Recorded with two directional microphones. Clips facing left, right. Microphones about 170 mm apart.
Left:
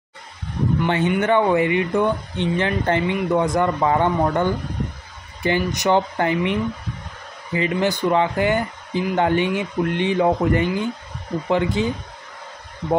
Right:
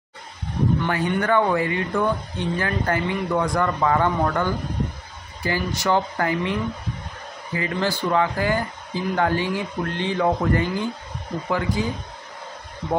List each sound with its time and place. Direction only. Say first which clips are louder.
0.8 s speech: left 3 dB; 25° left (ahead or behind)